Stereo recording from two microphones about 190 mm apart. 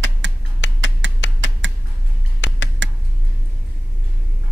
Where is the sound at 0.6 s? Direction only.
75° left (ahead or behind).